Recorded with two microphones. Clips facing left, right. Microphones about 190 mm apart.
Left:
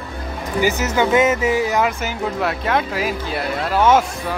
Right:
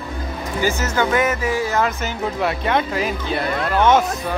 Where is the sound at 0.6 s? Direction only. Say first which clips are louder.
Left 2 dB; 15° left (ahead or behind).